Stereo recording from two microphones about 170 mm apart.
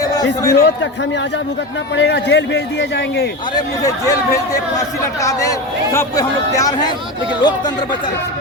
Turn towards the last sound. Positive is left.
turn(degrees=25)  # may be behind; listen again after turning